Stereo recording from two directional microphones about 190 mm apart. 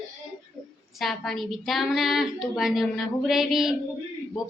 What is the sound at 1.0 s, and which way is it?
A woman's voice, centre (ahead or behind).